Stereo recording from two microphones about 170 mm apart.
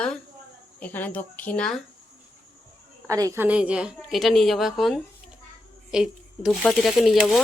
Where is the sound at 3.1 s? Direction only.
20° right (ahead or behind).